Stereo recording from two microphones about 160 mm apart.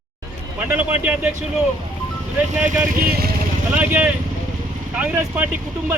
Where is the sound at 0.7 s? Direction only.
10° right (ahead or behind).